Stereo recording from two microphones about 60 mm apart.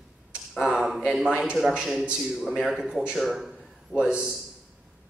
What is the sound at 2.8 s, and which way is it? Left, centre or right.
Speech, centre.